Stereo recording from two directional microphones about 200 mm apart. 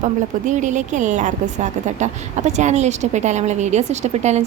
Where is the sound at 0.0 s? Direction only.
40° right (ahead or behind).